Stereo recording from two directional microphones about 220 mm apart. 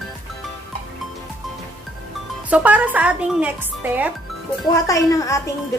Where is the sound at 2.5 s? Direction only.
5° right (ahead or behind).